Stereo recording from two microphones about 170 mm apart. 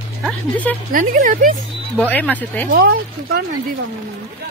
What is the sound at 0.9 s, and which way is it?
Speech, 55° right (ahead or behind).